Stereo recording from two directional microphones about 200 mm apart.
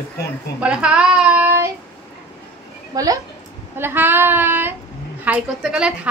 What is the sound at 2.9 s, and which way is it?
Child singing, 20° right (ahead or behind).